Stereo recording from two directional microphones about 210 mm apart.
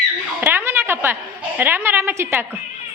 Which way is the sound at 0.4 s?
10° right (ahead or behind).